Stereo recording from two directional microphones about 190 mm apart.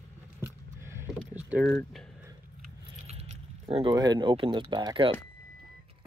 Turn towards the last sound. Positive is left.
turn(degrees=-25)  # may be behind; listen again after turning